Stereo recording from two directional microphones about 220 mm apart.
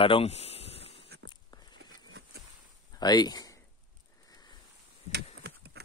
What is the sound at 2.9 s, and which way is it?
Speech, 20° left (ahead or behind).